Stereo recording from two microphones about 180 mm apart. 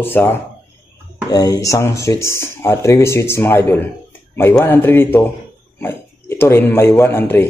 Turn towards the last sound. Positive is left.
turn(degrees=10)  # may be behind; listen again after turning